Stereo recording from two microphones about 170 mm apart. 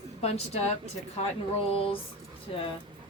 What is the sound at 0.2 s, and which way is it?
Speech, 35° left (ahead or behind).